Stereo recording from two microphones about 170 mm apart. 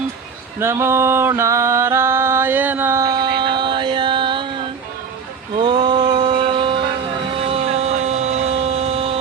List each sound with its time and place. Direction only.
0.6 s music: 15° right (ahead or behind)
5.5 s mantra: 30° right (ahead or behind)
7.5 s a sound: 40° right (ahead or behind)